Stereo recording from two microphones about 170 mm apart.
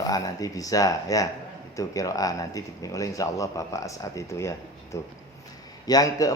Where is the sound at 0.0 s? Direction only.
20° left (ahead or behind).